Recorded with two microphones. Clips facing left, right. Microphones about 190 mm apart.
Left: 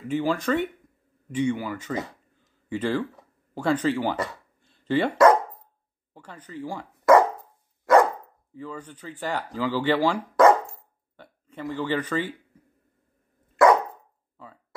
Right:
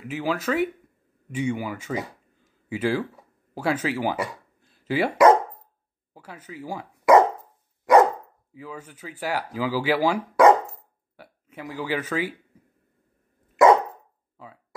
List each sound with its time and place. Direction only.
0.1 s speech: 5° right (ahead or behind)
7.8 s dog: 15° right (ahead or behind)
8.5 s speech: 10° right (ahead or behind)
10.7 s a sound: 5° right (ahead or behind)
13.6 s dog: 20° right (ahead or behind)
14.3 s a sound: 10° right (ahead or behind)